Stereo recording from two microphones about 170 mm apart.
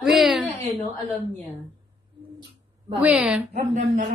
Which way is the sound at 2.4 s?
25° right (ahead or behind).